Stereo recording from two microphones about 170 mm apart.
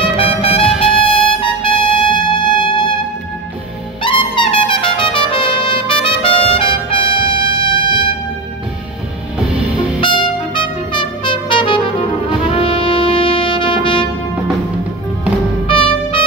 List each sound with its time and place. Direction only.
0.0 s music: 35° left (ahead or behind)
4.0 s trumpet: 30° left (ahead or behind)
9.9 s trumpet: 30° left (ahead or behind)
12.4 s music: 30° left (ahead or behind)
15.6 s music: 30° left (ahead or behind)